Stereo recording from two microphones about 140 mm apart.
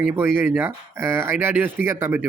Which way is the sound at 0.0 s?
15° right (ahead or behind).